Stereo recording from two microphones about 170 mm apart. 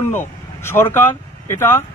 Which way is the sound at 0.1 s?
15° left (ahead or behind).